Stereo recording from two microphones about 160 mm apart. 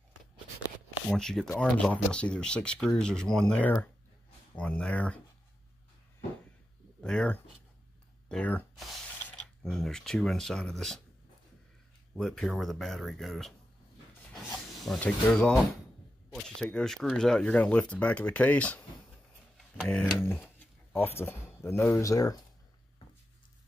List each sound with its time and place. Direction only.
1.1 s speech: 5° left (ahead or behind)
7.0 s speech: 5° left (ahead or behind)
12.2 s speech: centre (ahead or behind)
14.3 s rub: 5° left (ahead or behind)
15.3 s speech: 5° left (ahead or behind)
19.5 s a sound: 5° left (ahead or behind)
20.9 s speech: 15° left (ahead or behind)